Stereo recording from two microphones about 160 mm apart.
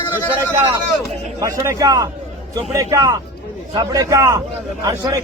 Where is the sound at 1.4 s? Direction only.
25° right (ahead or behind).